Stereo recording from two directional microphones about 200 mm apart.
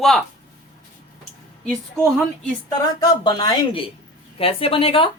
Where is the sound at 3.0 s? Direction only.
20° left (ahead or behind).